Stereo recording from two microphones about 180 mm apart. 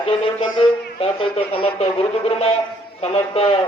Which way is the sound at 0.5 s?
30° left (ahead or behind).